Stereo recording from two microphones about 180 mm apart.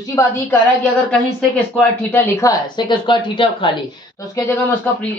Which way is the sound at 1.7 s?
10° left (ahead or behind).